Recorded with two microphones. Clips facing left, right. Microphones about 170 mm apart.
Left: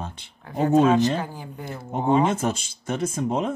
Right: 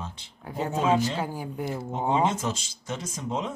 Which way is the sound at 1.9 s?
55° left (ahead or behind).